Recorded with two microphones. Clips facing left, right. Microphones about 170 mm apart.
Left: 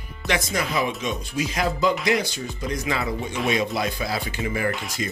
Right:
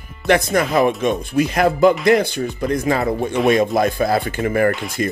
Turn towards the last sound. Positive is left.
turn(degrees=0)  # may be behind; listen again after turning